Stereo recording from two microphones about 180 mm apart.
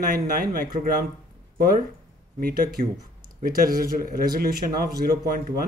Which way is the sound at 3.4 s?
55° right (ahead or behind).